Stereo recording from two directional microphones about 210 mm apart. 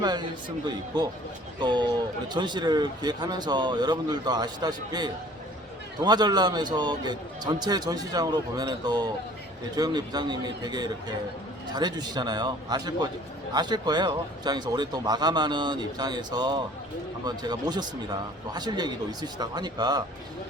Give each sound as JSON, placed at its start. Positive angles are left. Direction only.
{"t": 0.0, "sound": "a man's voice", "side_deg": -20}
{"t": 1.5, "sound": "a man's voice", "side_deg": -20}